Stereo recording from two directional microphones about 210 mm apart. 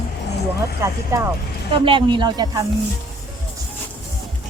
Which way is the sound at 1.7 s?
25° right (ahead or behind).